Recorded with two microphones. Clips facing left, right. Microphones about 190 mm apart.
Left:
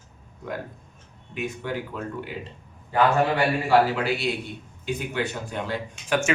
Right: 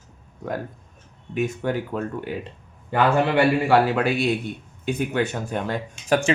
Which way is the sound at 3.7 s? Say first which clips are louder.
Right 2 dB; 55° right (ahead or behind).